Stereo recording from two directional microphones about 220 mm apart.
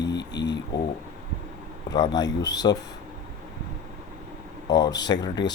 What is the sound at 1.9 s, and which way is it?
Speech, 15° left (ahead or behind).